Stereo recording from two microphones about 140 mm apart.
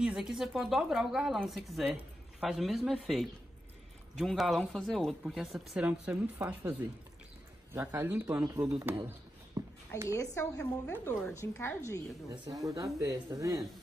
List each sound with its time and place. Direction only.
0.0 s speech: 5° right (ahead or behind)
7.7 s speech: 15° right (ahead or behind)
9.6 s a sound: 20° right (ahead or behind)
10.0 s a woman's voice: 20° left (ahead or behind)
12.3 s speech: 25° right (ahead or behind)